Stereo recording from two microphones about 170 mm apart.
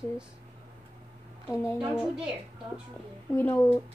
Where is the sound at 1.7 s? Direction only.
5° right (ahead or behind).